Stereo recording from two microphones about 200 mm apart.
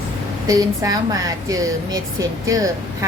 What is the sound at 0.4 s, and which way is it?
Speech, 20° right (ahead or behind).